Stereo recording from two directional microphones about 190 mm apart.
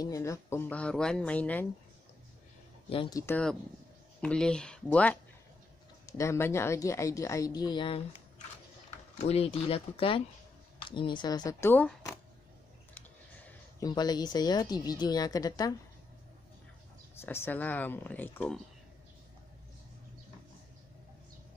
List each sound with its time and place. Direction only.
0.0 s a woman's voice: 15° left (ahead or behind)
2.9 s speech: 30° left (ahead or behind)
3.2 s a woman's voice: 10° left (ahead or behind); by 8.0 s 25° left (ahead or behind)
9.2 s speech: 30° left (ahead or behind); by 12.1 s 10° left (ahead or behind)
13.7 s speech: 20° left (ahead or behind)
17.2 s a woman's voice: 10° left (ahead or behind)